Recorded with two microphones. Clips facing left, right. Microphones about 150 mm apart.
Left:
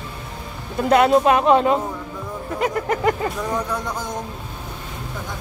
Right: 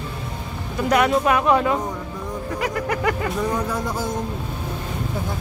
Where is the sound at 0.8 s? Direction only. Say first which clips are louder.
Left 4 dB; 25° left (ahead or behind).